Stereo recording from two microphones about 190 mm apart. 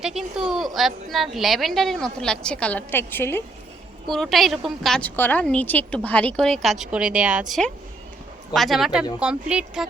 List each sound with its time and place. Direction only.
0.0 s a woman's voice: 5° right (ahead or behind)